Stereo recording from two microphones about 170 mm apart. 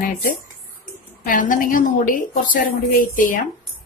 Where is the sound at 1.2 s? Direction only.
50° left (ahead or behind).